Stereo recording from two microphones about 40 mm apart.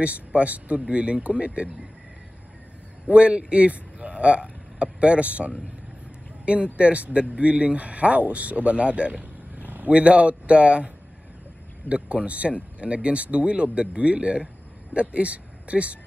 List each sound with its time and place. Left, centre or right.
0.0 s speech: right
3.1 s speech: right
11.9 s speech: right